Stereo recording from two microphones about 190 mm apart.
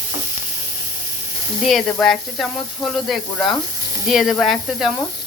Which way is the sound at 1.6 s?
Centre (ahead or behind).